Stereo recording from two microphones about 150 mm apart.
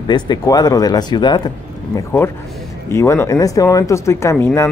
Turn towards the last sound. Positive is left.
turn(degrees=15)  # may be behind; listen again after turning